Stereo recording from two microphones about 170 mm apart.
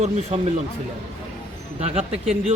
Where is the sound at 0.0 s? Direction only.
40° right (ahead or behind).